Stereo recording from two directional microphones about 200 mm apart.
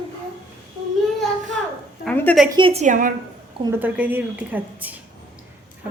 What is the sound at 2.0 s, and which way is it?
Speech, 5° left (ahead or behind).